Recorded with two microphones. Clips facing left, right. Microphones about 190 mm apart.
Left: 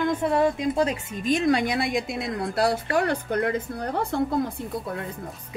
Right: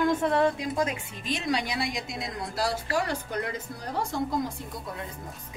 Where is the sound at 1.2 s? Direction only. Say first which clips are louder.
Left 8 dB; 50° left (ahead or behind).